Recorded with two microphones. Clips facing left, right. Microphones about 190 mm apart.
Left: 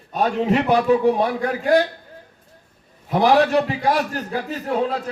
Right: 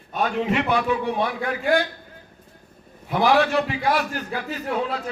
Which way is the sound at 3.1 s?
40° left (ahead or behind).